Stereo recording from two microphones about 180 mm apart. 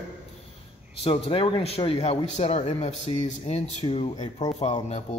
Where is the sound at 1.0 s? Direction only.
30° left (ahead or behind).